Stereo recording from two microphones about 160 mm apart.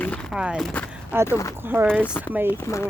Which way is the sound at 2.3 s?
10° right (ahead or behind).